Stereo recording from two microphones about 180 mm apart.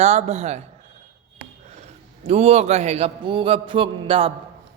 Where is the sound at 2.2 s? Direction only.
35° right (ahead or behind).